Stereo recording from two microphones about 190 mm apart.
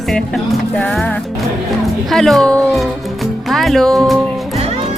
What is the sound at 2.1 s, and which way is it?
Speech, centre (ahead or behind).